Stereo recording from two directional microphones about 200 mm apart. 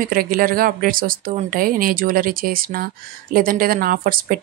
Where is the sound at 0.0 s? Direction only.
45° right (ahead or behind).